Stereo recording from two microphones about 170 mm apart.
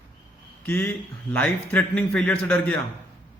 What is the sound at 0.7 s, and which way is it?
A man's voice, 10° left (ahead or behind).